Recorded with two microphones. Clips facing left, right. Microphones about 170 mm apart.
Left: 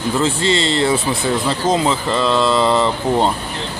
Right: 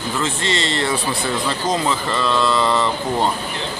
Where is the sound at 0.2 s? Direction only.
30° left (ahead or behind).